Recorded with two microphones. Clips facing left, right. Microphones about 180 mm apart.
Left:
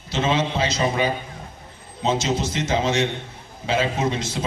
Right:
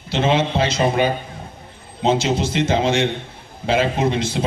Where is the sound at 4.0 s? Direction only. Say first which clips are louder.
Right 4 dB; 60° right (ahead or behind).